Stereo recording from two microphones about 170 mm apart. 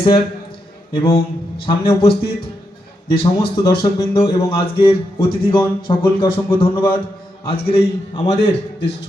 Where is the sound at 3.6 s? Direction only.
30° left (ahead or behind).